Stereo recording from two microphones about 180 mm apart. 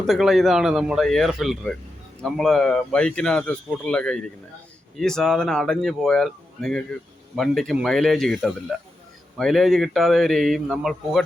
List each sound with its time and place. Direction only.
0.1 s speech: centre (ahead or behind)